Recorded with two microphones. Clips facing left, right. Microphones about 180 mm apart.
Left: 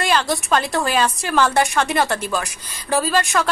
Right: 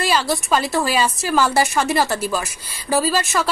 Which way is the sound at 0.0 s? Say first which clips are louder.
Even; 5° right (ahead or behind).